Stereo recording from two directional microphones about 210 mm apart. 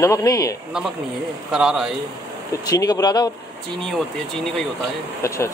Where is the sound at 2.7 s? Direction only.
15° left (ahead or behind).